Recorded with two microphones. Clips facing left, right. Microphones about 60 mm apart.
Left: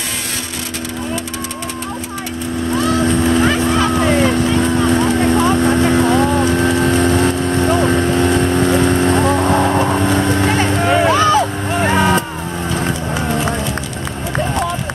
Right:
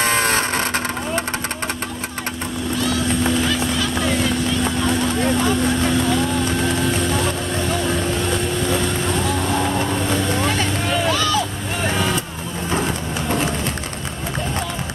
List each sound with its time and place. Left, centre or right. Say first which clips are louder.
2.8 s boat: left 5 dB; left